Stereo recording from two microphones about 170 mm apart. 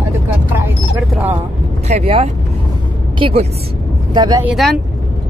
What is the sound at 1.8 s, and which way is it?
Vehicle, 40° right (ahead or behind).